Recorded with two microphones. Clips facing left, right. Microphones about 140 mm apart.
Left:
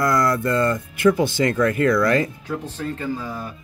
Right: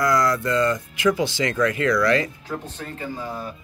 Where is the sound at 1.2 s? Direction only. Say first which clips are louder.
Left 3 dB; 50° left (ahead or behind).